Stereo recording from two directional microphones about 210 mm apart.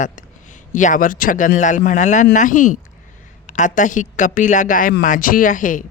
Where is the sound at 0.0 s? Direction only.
35° left (ahead or behind).